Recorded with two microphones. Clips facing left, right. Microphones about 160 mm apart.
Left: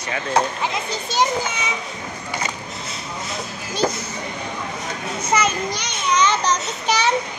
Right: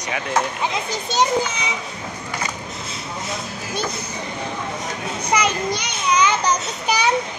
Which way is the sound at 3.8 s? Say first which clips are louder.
Left 10 dB; 45° left (ahead or behind).